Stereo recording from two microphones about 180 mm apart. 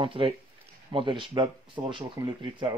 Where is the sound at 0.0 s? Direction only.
30° right (ahead or behind).